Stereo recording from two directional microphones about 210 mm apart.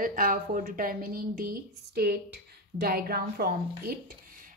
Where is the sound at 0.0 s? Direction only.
40° right (ahead or behind).